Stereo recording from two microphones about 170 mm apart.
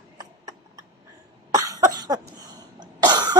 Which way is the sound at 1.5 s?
20° right (ahead or behind).